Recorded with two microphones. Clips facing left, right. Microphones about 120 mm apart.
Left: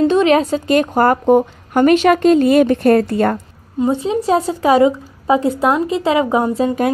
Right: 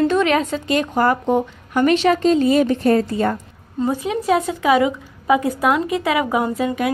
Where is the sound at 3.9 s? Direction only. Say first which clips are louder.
Left 3 dB; 30° left (ahead or behind).